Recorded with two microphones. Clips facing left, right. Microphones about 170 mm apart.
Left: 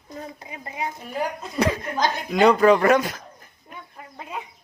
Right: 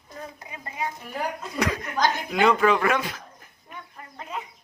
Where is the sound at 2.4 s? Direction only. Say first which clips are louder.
Left 5 dB; 40° left (ahead or behind).